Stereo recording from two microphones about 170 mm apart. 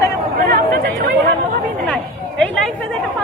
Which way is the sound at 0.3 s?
65° right (ahead or behind).